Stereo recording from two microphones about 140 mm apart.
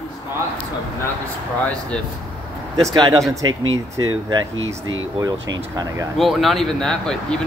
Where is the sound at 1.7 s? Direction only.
10° left (ahead or behind).